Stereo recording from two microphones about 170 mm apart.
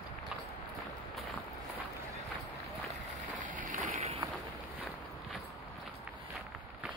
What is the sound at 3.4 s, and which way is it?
Boat, 50° right (ahead or behind).